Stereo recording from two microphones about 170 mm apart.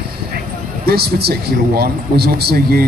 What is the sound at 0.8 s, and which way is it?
Speech, 65° right (ahead or behind).